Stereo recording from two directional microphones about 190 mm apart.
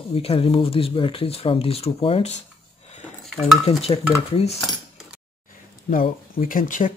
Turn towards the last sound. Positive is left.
turn(degrees=45)  # may be behind; listen again after turning